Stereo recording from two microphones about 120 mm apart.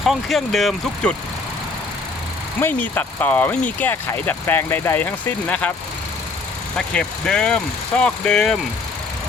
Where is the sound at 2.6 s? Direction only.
15° left (ahead or behind).